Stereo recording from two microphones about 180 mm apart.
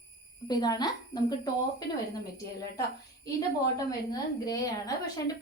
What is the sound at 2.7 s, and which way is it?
A woman's voice, 20° left (ahead or behind).